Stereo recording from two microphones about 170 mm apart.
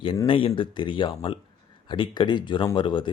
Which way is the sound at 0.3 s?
30° left (ahead or behind).